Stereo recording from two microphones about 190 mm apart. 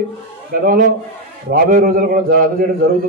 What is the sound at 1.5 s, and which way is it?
A man's voice, 50° right (ahead or behind).